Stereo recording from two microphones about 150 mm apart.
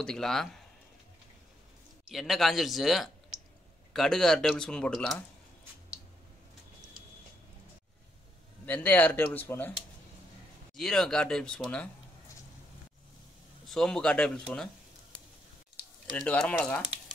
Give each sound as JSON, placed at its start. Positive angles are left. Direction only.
{"t": 0.0, "sound": "speech", "side_deg": 5}
{"t": 2.0, "sound": "speech", "side_deg": 0}
{"t": 8.6, "sound": "speech", "side_deg": 10}
{"t": 10.8, "sound": "speech", "side_deg": 5}
{"t": 13.7, "sound": "speech", "side_deg": 5}
{"t": 16.2, "sound": "speech", "side_deg": 5}